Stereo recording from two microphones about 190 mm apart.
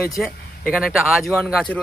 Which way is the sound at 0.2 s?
Centre (ahead or behind).